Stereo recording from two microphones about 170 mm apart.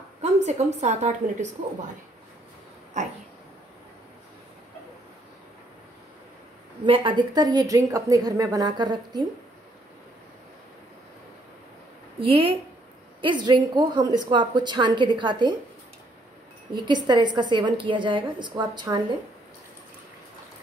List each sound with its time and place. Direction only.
0.2 s a woman's voice: 40° right (ahead or behind)
6.8 s a woman's voice: 30° right (ahead or behind)
12.2 s a woman's voice: 30° right (ahead or behind)
16.7 s a woman's voice: 25° right (ahead or behind)